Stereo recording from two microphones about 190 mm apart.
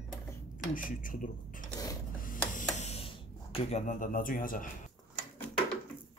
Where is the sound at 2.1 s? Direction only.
45° left (ahead or behind).